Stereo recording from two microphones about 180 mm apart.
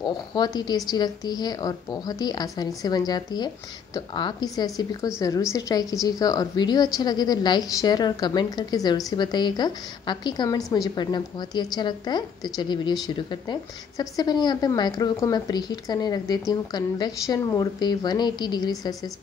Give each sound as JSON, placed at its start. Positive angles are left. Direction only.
{"t": 0.0, "sound": "a woman's voice", "side_deg": 25}